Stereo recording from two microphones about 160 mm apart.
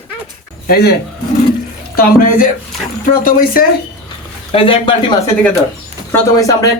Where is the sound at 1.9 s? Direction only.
65° left (ahead or behind).